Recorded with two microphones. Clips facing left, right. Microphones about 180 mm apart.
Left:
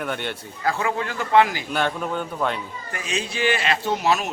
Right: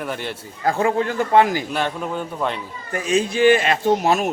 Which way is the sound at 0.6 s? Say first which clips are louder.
Right 5 dB; 40° right (ahead or behind).